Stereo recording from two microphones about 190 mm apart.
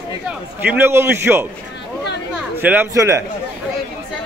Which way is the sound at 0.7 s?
10° right (ahead or behind).